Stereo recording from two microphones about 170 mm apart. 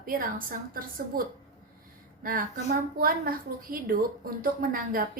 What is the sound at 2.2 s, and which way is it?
A woman's voice, 55° right (ahead or behind).